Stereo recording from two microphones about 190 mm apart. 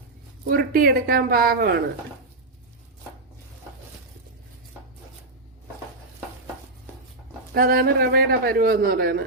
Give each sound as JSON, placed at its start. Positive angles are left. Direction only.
{"t": 0.5, "sound": "a man's voice", "side_deg": -50}
{"t": 7.5, "sound": "a man's voice", "side_deg": -50}